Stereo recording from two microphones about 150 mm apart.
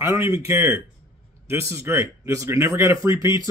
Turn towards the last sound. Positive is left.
turn(degrees=-20)  # may be behind; listen again after turning